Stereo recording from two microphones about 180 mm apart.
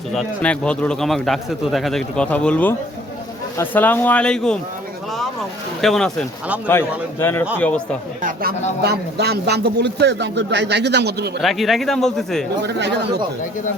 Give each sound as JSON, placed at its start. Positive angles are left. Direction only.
{"t": 0.1, "sound": "a man's voice", "side_deg": 5}
{"t": 5.8, "sound": "a man's voice", "side_deg": 0}
{"t": 8.2, "sound": "a man's voice", "side_deg": -55}
{"t": 11.4, "sound": "a man's voice", "side_deg": 0}
{"t": 12.6, "sound": "a man's voice", "side_deg": -70}